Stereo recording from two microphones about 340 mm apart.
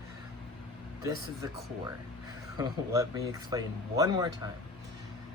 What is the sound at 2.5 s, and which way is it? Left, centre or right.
Speech, centre.